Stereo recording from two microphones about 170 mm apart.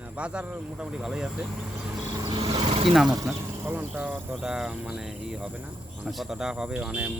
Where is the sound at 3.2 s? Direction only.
15° right (ahead or behind).